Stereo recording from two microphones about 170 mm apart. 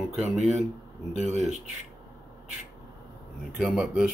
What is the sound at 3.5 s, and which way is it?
Speech, 5° right (ahead or behind).